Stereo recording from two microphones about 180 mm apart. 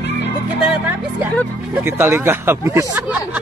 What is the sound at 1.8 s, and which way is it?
Speech, 15° right (ahead or behind).